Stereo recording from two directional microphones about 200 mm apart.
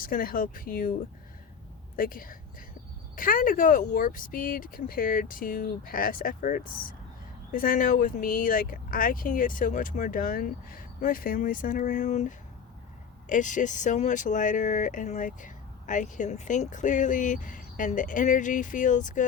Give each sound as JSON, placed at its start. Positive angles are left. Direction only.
{"t": 0.0, "sound": "speech", "side_deg": 45}
{"t": 2.0, "sound": "a woman's voice", "side_deg": 45}